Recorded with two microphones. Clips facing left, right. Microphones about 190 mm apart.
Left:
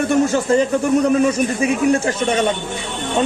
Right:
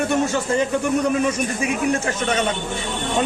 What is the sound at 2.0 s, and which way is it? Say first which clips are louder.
Speech: left 4 dB; 30° left (ahead or behind).